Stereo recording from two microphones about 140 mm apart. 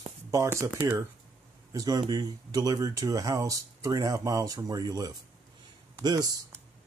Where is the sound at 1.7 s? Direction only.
25° right (ahead or behind).